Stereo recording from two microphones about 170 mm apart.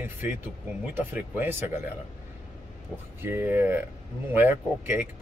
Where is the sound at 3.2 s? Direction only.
10° right (ahead or behind).